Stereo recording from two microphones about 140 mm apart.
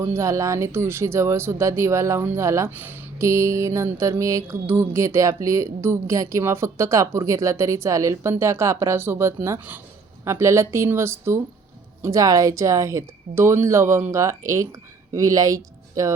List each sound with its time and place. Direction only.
0.0 s speech: 20° right (ahead or behind)